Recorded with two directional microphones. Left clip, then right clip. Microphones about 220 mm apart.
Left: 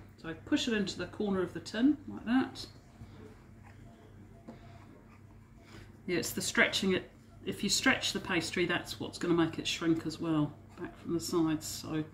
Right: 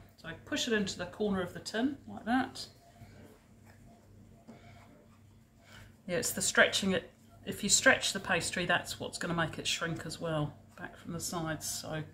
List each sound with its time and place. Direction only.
0.2 s speech: 35° right (ahead or behind)
6.0 s speech: 35° right (ahead or behind)